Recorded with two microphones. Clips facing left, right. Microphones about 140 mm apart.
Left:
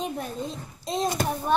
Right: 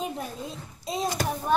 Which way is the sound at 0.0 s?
5° right (ahead or behind).